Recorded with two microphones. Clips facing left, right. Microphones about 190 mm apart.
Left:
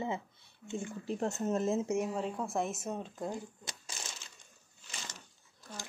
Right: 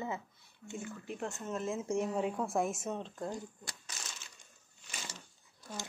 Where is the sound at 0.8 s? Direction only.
35° left (ahead or behind).